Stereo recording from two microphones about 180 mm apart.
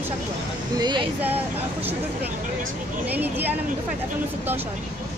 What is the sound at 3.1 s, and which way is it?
Speech, 10° right (ahead or behind).